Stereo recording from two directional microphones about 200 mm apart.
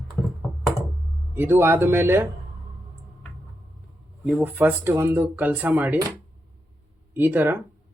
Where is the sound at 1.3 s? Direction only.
10° right (ahead or behind).